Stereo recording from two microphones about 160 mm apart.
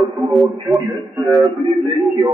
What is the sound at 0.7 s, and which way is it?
Speech, 20° right (ahead or behind).